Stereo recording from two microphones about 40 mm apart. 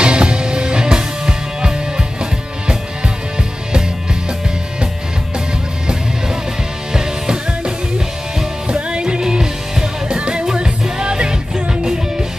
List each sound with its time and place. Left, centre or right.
0.0 s music: right
6.9 s music: centre